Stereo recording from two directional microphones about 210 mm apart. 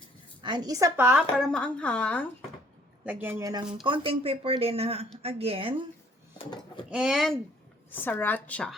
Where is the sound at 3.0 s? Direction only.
5° right (ahead or behind); by 5.8 s 25° right (ahead or behind).